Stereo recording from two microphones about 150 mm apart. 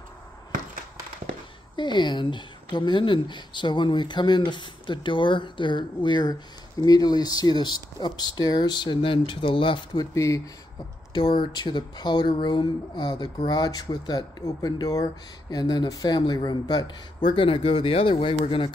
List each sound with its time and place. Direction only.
1.8 s speech: 30° left (ahead or behind)
10.1 s speech: 20° left (ahead or behind)
11.1 s speech: 35° left (ahead or behind)